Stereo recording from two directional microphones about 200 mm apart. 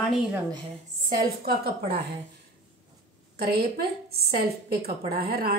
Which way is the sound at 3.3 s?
50° right (ahead or behind).